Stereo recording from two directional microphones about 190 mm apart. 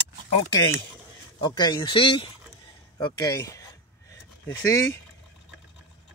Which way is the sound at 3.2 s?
15° left (ahead or behind).